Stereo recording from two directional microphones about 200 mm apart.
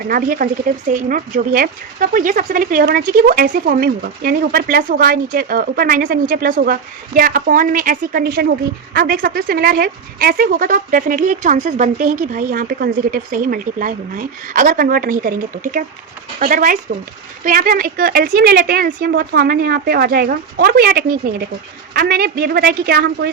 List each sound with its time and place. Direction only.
0.1 s speech: 45° right (ahead or behind)